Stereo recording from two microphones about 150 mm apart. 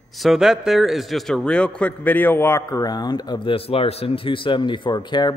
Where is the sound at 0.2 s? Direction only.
Centre (ahead or behind).